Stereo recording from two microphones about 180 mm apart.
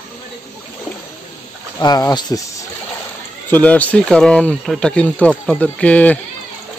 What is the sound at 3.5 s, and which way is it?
Speech, 10° left (ahead or behind).